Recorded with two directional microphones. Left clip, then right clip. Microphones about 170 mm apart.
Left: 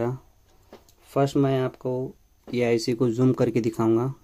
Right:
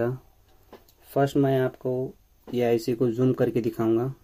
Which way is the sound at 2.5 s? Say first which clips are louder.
Even; 20° left (ahead or behind).